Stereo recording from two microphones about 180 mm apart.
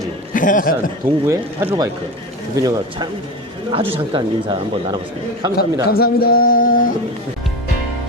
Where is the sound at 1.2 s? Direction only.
15° right (ahead or behind).